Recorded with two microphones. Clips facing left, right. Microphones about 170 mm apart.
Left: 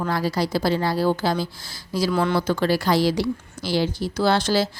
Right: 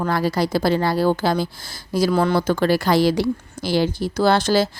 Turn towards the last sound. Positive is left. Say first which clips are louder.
# right 3 dB
turn(degrees=-50)  # may be behind; listen again after turning